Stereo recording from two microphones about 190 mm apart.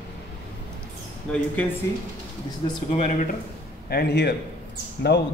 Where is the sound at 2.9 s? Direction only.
35° left (ahead or behind).